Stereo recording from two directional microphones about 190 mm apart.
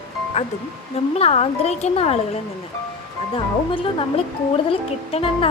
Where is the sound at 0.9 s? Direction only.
30° left (ahead or behind).